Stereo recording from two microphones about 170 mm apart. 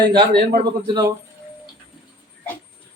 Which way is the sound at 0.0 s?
25° right (ahead or behind).